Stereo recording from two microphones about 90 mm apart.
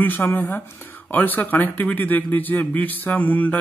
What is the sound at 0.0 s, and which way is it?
A man's voice, 20° left (ahead or behind).